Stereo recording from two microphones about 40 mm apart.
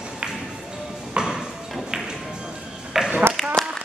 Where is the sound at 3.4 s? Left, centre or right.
Centre.